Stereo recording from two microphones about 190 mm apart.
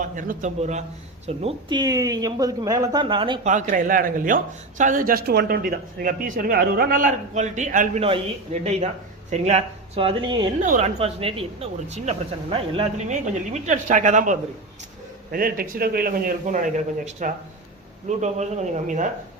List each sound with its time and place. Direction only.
0.0 s speech: 40° right (ahead or behind); by 3.4 s 25° right (ahead or behind)
3.4 s a man's voice: 40° right (ahead or behind); by 10.5 s 25° right (ahead or behind)
10.6 s a man's voice: 35° right (ahead or behind)